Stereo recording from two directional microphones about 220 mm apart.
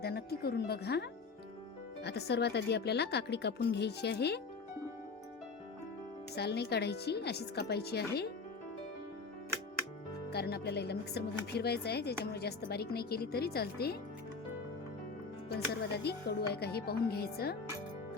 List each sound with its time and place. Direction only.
0.0 s speech: 45° left (ahead or behind)
2.0 s speech: 50° left (ahead or behind)
6.3 s speech: 50° left (ahead or behind)
10.2 s speech: 45° left (ahead or behind)
15.4 s speech: 45° left (ahead or behind)